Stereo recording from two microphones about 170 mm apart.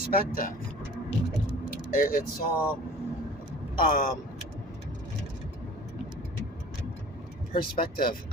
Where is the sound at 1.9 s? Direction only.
55° left (ahead or behind).